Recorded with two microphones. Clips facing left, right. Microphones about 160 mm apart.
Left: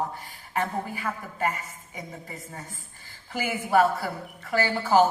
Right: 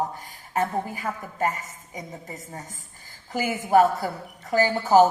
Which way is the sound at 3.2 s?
40° right (ahead or behind).